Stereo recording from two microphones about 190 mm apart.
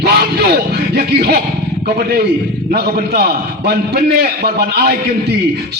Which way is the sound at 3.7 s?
55° right (ahead or behind).